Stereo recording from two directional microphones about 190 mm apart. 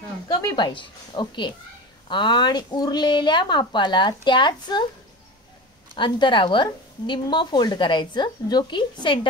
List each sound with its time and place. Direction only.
0.3 s speech: 20° left (ahead or behind)
5.9 s speech: 25° left (ahead or behind)